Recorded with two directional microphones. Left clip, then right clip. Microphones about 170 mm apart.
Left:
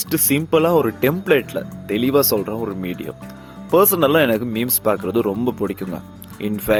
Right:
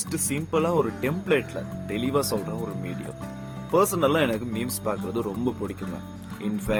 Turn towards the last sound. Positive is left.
turn(degrees=45)  # may be behind; listen again after turning